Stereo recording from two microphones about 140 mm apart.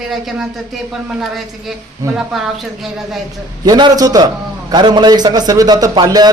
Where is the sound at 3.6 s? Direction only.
30° right (ahead or behind).